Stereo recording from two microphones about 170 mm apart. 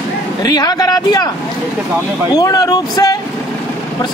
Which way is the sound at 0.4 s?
25° left (ahead or behind).